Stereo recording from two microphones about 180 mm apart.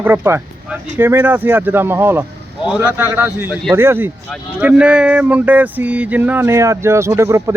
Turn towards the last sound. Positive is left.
turn(degrees=-15)  # may be behind; listen again after turning